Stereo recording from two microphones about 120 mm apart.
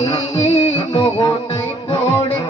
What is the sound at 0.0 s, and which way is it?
Music, 55° left (ahead or behind).